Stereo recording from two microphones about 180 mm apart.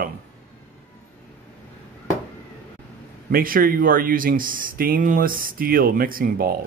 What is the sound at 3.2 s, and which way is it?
Speech, 55° right (ahead or behind).